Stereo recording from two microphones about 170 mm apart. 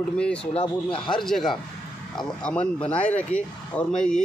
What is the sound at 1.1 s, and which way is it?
Speech, centre (ahead or behind).